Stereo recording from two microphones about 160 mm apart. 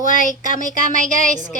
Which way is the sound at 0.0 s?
55° left (ahead or behind).